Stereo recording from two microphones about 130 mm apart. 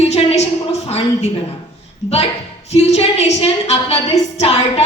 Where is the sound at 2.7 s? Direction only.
55° left (ahead or behind).